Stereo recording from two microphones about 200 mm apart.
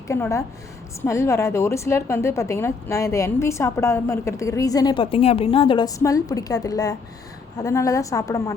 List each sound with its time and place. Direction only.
0.1 s a woman's voice: 15° left (ahead or behind)